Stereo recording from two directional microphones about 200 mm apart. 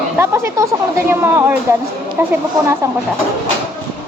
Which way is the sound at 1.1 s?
10° right (ahead or behind).